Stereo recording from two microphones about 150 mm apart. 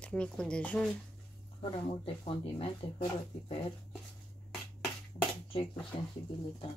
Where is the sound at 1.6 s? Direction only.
35° left (ahead or behind).